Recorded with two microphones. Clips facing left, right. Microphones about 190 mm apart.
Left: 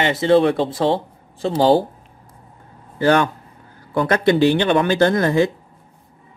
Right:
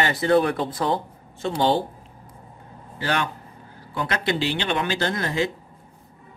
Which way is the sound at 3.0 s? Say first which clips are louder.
Left 10 dB; 50° left (ahead or behind).